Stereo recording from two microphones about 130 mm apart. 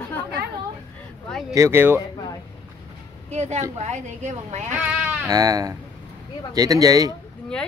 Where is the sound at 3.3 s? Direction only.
60° right (ahead or behind).